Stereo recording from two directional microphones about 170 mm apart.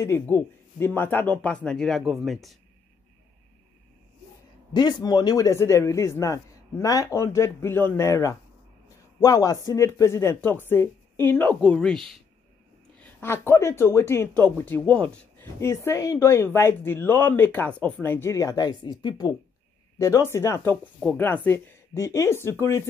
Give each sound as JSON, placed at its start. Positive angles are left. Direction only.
{"t": 0.0, "sound": "speech", "side_deg": 15}
{"t": 4.7, "sound": "a man's voice", "side_deg": 25}
{"t": 13.0, "sound": "speech", "side_deg": 15}